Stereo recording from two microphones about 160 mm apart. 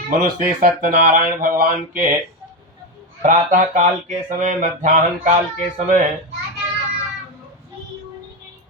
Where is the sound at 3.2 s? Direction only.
55° right (ahead or behind).